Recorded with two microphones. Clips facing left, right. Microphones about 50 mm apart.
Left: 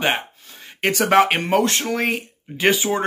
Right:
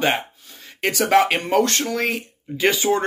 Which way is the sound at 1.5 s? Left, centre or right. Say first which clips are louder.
Right 1 dB; centre.